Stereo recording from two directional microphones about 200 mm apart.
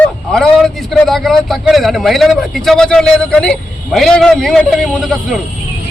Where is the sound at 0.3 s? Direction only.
5° left (ahead or behind).